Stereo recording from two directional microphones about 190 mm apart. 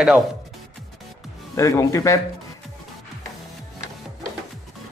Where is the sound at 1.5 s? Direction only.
15° left (ahead or behind).